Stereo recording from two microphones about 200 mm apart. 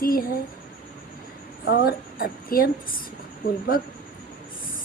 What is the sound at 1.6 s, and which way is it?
A woman's voice, 50° left (ahead or behind).